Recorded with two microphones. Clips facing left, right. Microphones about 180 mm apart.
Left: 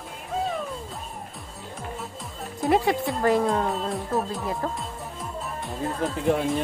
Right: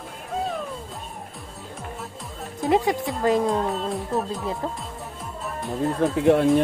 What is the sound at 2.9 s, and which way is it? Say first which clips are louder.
Speech: even; centre (ahead or behind).